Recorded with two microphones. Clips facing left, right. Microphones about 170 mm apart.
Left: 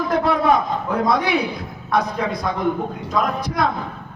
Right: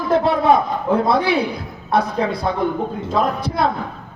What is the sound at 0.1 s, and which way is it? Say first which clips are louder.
A man's voice: right 3 dB; 30° right (ahead or behind).